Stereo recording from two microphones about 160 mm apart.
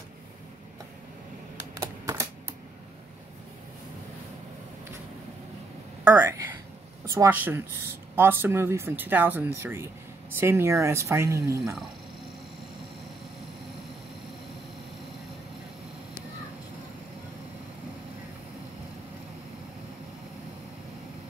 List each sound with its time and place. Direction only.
1.8 s typewriter: 20° right (ahead or behind)
6.0 s speech: 15° right (ahead or behind)